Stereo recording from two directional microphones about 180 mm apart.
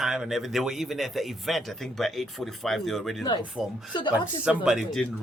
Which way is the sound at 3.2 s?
25° left (ahead or behind).